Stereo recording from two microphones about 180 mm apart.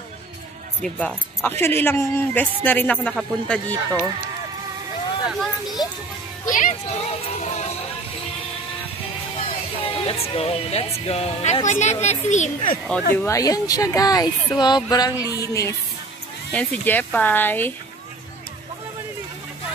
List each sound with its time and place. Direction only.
0.8 s speech: 5° left (ahead or behind)
5.4 s a sound: centre (ahead or behind)
6.4 s speech: 45° left (ahead or behind)
9.8 s speech: 30° left (ahead or behind)
13.1 s speech: 15° left (ahead or behind)